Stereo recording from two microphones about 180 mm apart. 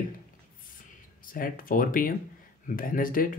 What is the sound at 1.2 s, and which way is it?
Speech, 50° left (ahead or behind).